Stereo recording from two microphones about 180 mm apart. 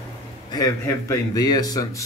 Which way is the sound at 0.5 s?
20° left (ahead or behind).